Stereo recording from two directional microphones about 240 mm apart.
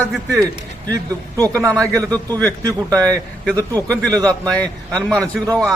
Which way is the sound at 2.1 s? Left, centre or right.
Centre.